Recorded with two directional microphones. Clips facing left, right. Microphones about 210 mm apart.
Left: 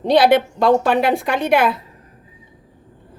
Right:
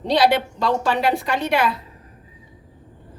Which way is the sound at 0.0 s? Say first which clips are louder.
Left 5 dB; 50° left (ahead or behind).